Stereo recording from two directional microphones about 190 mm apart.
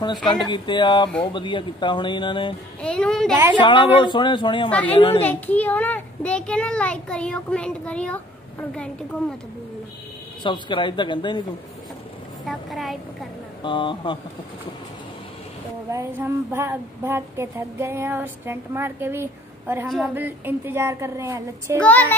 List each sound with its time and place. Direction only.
0.0 s speech: 25° left (ahead or behind)
2.8 s a child's voice: 5° left (ahead or behind)
3.5 s speech: 25° left (ahead or behind)
4.6 s a woman's voice: 5° left (ahead or behind)
4.9 s speech: 30° left (ahead or behind)
5.2 s a child's voice: 10° left (ahead or behind)
10.4 s speech: 25° left (ahead or behind)
12.4 s a sound: centre (ahead or behind)
13.6 s speech: 25° left (ahead or behind)
15.9 s speech: 15° right (ahead or behind)